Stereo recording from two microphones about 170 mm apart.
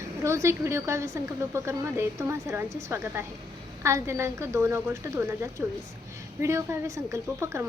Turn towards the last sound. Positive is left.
turn(degrees=-15)  # may be behind; listen again after turning